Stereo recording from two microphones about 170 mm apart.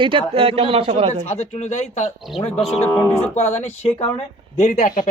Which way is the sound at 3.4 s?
40° left (ahead or behind).